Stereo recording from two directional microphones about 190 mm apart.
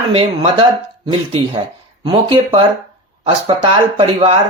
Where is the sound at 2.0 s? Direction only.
25° right (ahead or behind).